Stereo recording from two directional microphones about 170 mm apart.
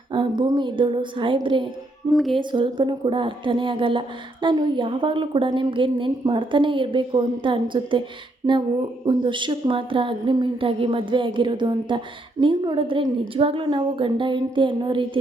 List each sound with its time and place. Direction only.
0.1 s speech: 30° right (ahead or behind)
2.1 s music: centre (ahead or behind)
2.4 s speech: 25° right (ahead or behind)
9.0 s speech: 30° right (ahead or behind)